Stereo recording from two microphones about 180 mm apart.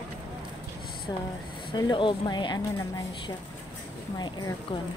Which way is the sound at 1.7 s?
25° left (ahead or behind).